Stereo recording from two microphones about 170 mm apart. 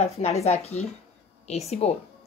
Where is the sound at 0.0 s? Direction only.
40° left (ahead or behind).